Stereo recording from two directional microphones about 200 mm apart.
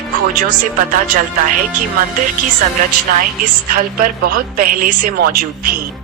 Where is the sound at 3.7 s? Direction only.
45° right (ahead or behind).